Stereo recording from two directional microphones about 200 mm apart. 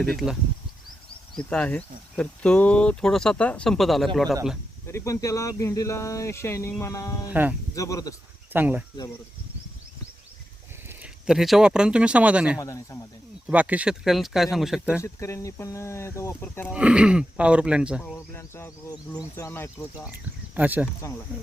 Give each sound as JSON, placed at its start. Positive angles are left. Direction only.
{"t": 1.4, "sound": "speech", "side_deg": 5}
{"t": 4.9, "sound": "speech", "side_deg": 15}
{"t": 7.3, "sound": "speech", "side_deg": -10}
{"t": 7.8, "sound": "speech", "side_deg": 15}
{"t": 8.5, "sound": "speech", "side_deg": -10}
{"t": 10.8, "sound": "speech", "side_deg": -5}
{"t": 12.5, "sound": "speech", "side_deg": 15}
{"t": 13.5, "sound": "speech", "side_deg": -5}
{"t": 15.0, "sound": "speech", "side_deg": 15}
{"t": 16.7, "sound": "speech", "side_deg": -5}
{"t": 18.0, "sound": "speech", "side_deg": 10}
{"t": 20.6, "sound": "speech", "side_deg": -10}